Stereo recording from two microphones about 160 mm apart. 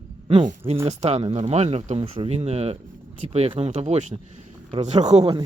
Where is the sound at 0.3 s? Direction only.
40° right (ahead or behind).